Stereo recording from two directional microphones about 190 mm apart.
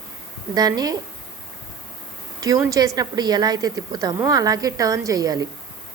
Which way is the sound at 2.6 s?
20° right (ahead or behind).